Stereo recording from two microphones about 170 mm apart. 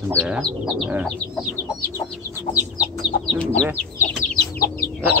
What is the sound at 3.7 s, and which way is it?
Chicken, 50° left (ahead or behind).